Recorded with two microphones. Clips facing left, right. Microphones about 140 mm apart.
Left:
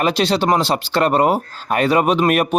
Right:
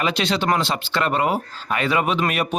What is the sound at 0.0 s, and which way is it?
Speech, 35° left (ahead or behind).